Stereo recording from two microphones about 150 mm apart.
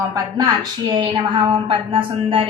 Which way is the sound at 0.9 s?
30° right (ahead or behind).